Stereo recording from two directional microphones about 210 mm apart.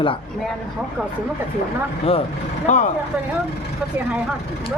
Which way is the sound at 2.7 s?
35° left (ahead or behind).